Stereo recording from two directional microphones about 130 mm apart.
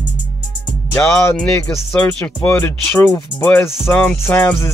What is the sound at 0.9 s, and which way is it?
Speech, 15° left (ahead or behind).